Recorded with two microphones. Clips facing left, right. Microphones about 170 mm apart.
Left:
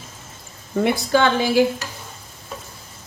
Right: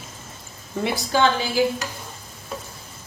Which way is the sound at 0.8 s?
55° left (ahead or behind).